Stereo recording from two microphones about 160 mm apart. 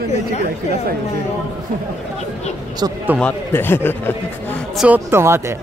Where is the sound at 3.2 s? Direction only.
10° left (ahead or behind).